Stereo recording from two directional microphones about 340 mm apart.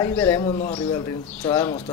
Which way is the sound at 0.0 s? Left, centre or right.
Centre.